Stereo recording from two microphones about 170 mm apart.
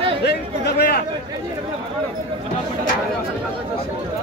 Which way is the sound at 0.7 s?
65° left (ahead or behind).